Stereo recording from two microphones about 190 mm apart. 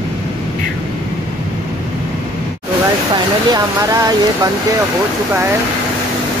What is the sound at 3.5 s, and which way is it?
Speech, 20° right (ahead or behind).